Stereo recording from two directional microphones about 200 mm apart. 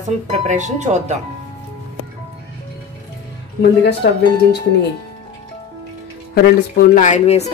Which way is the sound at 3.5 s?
55° left (ahead or behind).